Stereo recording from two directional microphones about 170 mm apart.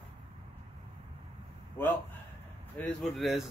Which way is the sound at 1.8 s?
15° left (ahead or behind).